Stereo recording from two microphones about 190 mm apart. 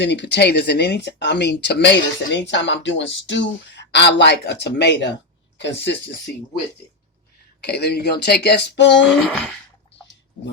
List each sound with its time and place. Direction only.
0.0 s speech: 65° left (ahead or behind)
7.6 s speech: 60° left (ahead or behind)
9.0 s speech: 5° left (ahead or behind)